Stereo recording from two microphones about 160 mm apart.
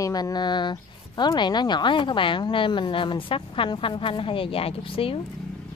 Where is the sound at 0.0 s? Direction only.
25° left (ahead or behind).